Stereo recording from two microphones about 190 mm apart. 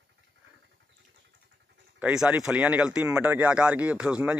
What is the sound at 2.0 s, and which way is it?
Speech, 5° right (ahead or behind).